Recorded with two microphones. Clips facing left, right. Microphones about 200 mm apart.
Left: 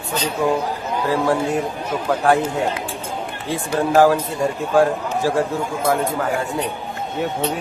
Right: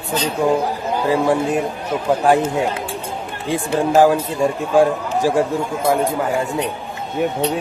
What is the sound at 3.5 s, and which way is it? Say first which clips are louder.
Speech: right 2 dB; 15° right (ahead or behind).